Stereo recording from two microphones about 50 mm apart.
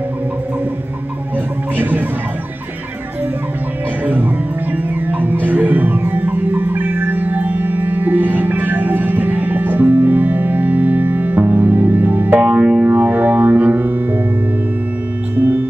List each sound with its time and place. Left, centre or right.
1.8 s speech: right
4.0 s music: right
12.4 s music: centre
12.9 s music: right